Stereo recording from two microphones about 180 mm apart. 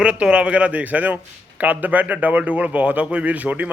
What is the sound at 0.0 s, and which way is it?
A man's voice, 5° right (ahead or behind).